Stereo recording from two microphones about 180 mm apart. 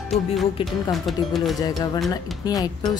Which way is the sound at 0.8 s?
Centre (ahead or behind).